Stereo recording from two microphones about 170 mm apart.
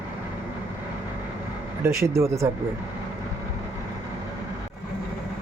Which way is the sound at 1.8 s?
15° right (ahead or behind).